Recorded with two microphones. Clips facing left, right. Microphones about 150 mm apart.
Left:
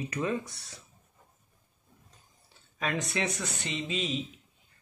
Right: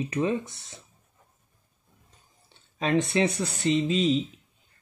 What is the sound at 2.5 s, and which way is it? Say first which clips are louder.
Speech: right 8 dB; 25° right (ahead or behind).